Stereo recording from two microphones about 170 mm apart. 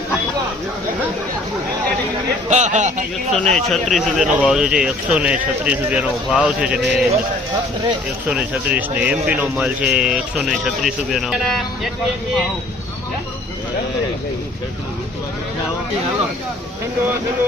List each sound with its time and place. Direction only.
2.5 s a man's voice: 45° right (ahead or behind)
3.3 s speech: 5° left (ahead or behind)
8.3 s speech: 5° right (ahead or behind)